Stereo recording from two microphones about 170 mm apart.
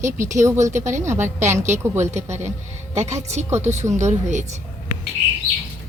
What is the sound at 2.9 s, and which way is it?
Speech, 40° right (ahead or behind).